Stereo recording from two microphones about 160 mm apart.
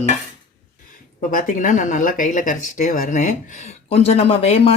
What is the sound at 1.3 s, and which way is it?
Speech, 55° left (ahead or behind).